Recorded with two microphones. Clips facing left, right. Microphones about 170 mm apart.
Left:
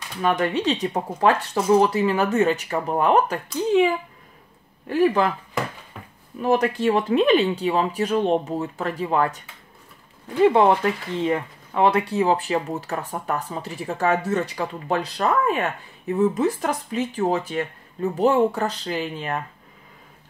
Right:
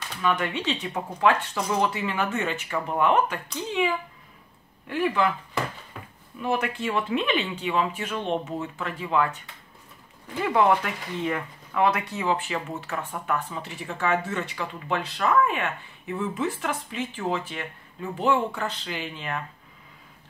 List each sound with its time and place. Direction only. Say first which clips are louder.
0.2 s speech: left 5 dB; 40° left (ahead or behind)
4.8 s speech: left 5 dB; 40° left (ahead or behind)
6.4 s speech: left 7 dB; 40° left (ahead or behind)
10.4 s speech: left 6 dB; 25° left (ahead or behind)